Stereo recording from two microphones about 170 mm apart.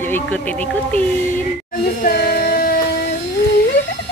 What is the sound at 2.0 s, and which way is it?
Music, 60° left (ahead or behind).